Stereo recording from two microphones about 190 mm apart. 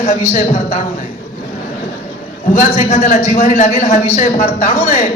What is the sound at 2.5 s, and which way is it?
A man's voice, 40° left (ahead or behind).